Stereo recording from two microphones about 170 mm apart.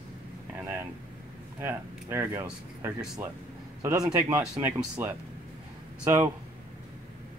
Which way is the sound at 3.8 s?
20° right (ahead or behind).